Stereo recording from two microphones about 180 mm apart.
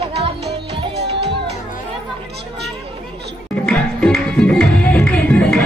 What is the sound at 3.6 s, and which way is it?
Music, 5° left (ahead or behind).